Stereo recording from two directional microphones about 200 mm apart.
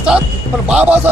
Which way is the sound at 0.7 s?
10° right (ahead or behind).